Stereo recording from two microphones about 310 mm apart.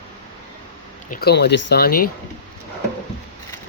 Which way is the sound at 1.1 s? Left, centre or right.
Left.